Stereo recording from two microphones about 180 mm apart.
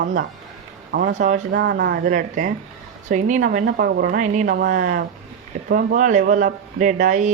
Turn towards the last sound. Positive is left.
turn(degrees=-45)  # may be behind; listen again after turning